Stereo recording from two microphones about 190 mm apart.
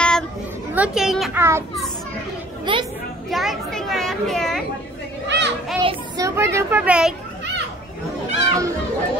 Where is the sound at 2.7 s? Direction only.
25° right (ahead or behind).